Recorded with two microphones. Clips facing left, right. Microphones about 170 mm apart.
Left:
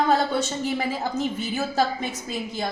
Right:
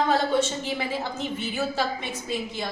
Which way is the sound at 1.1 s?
40° left (ahead or behind).